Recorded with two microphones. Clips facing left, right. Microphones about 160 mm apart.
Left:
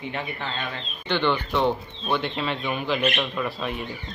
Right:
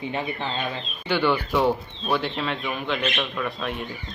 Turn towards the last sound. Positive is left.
turn(degrees=0)  # may be behind; listen again after turning